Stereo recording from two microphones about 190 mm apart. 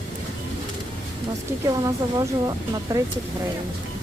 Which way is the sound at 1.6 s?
20° right (ahead or behind).